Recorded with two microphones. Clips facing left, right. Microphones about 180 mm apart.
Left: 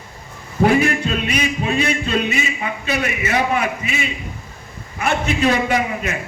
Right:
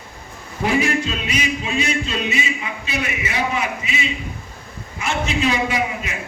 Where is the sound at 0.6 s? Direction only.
55° left (ahead or behind).